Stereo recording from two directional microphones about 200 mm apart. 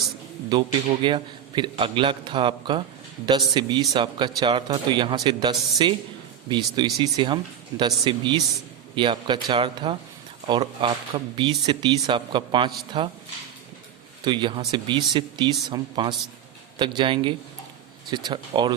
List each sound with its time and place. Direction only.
0.5 s speech: 25° right (ahead or behind)
14.3 s speech: 25° right (ahead or behind)